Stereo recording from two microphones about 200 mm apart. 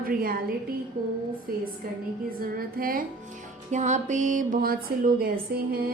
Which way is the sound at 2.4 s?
45° right (ahead or behind).